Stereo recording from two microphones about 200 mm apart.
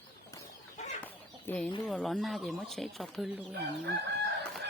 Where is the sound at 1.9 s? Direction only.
Centre (ahead or behind).